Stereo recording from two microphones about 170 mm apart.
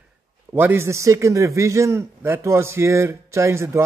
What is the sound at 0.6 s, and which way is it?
A man's voice, 15° right (ahead or behind).